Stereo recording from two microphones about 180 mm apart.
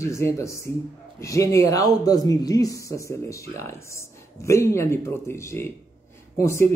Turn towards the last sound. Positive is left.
turn(degrees=15)  # may be behind; listen again after turning